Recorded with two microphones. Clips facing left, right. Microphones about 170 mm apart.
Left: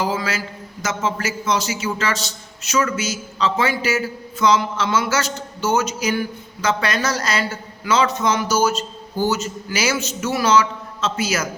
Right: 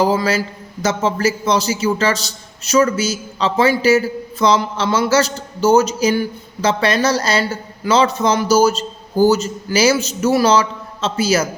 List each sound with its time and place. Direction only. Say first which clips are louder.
0.0 s a man's voice: right 7 dB; 35° right (ahead or behind)